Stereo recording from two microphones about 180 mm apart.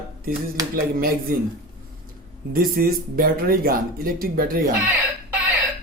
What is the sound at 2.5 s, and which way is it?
Speech, 55° right (ahead or behind).